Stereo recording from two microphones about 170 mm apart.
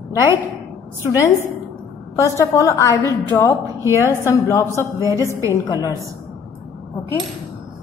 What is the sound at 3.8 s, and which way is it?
Music, 15° right (ahead or behind).